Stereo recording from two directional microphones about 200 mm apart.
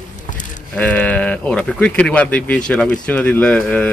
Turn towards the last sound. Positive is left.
turn(degrees=5)  # may be behind; listen again after turning